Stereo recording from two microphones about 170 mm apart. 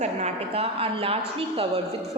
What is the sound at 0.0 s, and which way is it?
A woman's voice, 40° right (ahead or behind).